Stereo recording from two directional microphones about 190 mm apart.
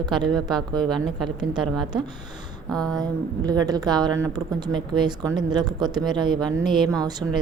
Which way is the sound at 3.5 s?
20° right (ahead or behind).